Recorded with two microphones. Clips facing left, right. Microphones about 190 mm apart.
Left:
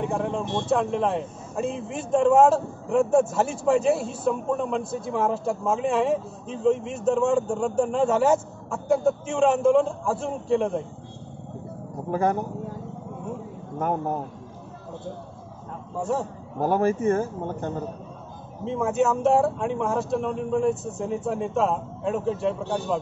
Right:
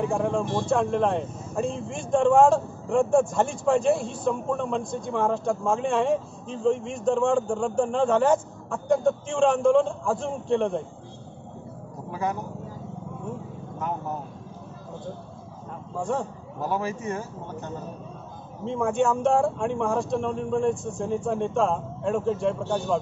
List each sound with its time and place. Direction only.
0.0 s speech: centre (ahead or behind)
12.1 s speech: 50° left (ahead or behind)
16.0 s a man's voice: 5° left (ahead or behind)
16.5 s speech: 50° left (ahead or behind)
18.7 s speech: 5° left (ahead or behind)